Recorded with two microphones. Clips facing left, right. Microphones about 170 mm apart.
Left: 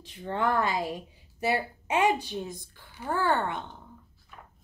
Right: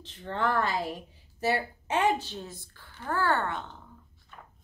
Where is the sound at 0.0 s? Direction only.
15° left (ahead or behind).